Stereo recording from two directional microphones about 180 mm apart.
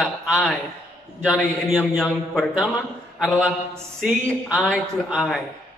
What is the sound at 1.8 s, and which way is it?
Speech, 10° left (ahead or behind).